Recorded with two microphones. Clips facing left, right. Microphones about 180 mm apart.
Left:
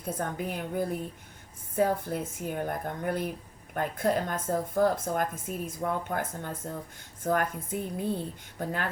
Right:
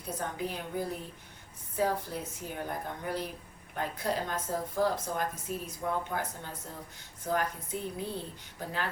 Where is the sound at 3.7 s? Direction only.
50° left (ahead or behind).